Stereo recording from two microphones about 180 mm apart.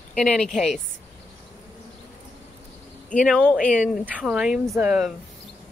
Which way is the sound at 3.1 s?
5° left (ahead or behind).